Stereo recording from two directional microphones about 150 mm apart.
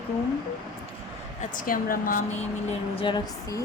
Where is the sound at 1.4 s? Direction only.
65° left (ahead or behind).